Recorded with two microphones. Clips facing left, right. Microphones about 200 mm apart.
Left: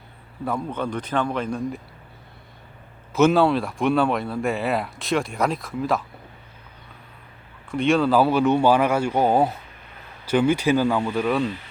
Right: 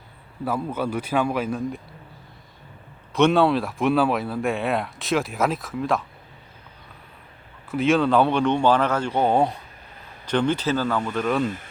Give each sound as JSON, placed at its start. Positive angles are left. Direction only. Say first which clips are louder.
{"t": 0.4, "sound": "a man's voice", "louder": "right 1 dB", "side_deg": -5}
{"t": 3.1, "sound": "speech", "louder": "left 1 dB", "side_deg": 0}
{"t": 7.7, "sound": "speech", "louder": "even", "side_deg": 0}
{"t": 11.4, "sound": "speech", "louder": "even", "side_deg": -45}